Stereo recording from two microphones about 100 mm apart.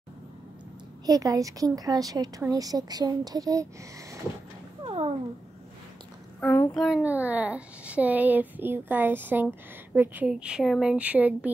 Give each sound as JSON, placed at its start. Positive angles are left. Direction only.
{"t": 1.0, "sound": "a woman's voice", "side_deg": -40}
{"t": 4.8, "sound": "cat", "side_deg": -75}
{"t": 6.4, "sound": "a child's voice", "side_deg": 20}
{"t": 6.7, "sound": "a child's voice", "side_deg": 0}
{"t": 7.0, "sound": "a woman's voice", "side_deg": -15}